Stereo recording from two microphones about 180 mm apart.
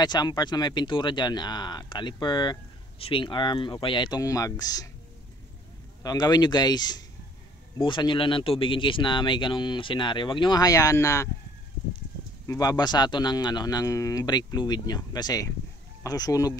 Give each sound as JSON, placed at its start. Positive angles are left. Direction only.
{"t": 0.0, "sound": "speech", "side_deg": 25}
{"t": 6.0, "sound": "speech", "side_deg": 20}
{"t": 12.4, "sound": "speech", "side_deg": 20}